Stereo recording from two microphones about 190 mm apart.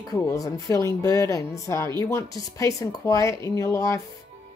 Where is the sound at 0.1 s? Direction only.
15° left (ahead or behind).